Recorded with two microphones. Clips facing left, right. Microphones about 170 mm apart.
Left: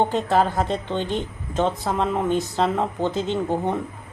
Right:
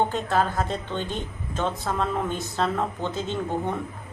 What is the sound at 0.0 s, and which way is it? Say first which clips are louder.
Speech: left 4 dB; 20° left (ahead or behind).